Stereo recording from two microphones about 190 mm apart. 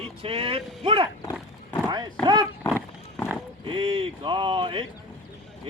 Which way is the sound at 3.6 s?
25° right (ahead or behind).